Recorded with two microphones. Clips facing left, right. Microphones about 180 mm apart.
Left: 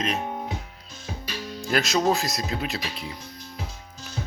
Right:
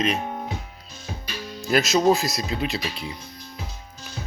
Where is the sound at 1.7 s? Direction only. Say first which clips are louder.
Right 4 dB; 5° right (ahead or behind).